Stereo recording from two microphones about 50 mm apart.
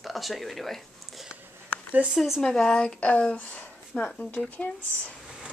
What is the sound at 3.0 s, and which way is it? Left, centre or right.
Speech, left.